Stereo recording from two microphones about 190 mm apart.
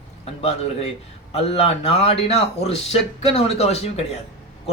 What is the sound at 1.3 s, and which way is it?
A man's voice, 30° left (ahead or behind).